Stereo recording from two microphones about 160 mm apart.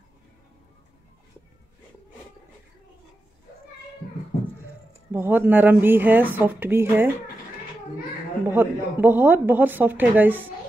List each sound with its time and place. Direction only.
4.0 s a sound: 65° left (ahead or behind)
5.1 s a woman's voice: 10° right (ahead or behind)
8.5 s a woman's voice: 10° right (ahead or behind)